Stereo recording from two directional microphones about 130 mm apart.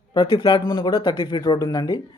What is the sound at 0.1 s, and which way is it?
A man's voice, 35° left (ahead or behind).